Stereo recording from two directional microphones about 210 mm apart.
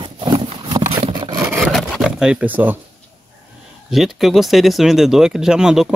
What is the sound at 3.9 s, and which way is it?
Speech, centre (ahead or behind).